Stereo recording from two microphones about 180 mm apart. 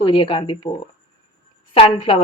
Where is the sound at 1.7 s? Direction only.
30° left (ahead or behind).